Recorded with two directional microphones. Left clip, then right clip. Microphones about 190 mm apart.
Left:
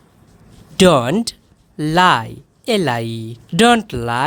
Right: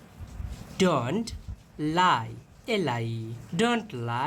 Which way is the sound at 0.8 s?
55° left (ahead or behind).